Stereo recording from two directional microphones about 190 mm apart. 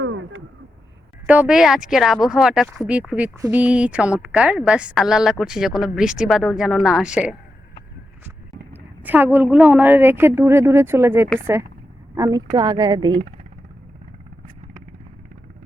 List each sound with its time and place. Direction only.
0.0 s a sound: 90° right
1.3 s speech: 5° right (ahead or behind)
8.7 s a woman's voice: 10° right (ahead or behind)